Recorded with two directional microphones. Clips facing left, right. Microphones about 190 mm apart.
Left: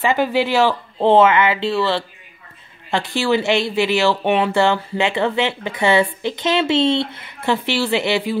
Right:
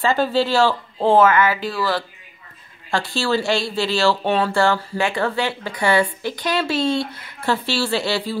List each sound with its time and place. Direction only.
0.0 s speech: 15° left (ahead or behind)